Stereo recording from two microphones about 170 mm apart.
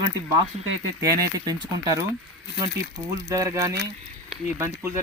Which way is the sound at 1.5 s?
20° right (ahead or behind).